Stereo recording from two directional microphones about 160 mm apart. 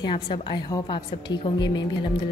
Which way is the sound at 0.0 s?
30° left (ahead or behind).